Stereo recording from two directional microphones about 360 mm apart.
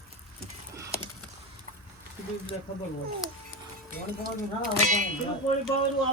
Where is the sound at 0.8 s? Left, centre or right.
Centre.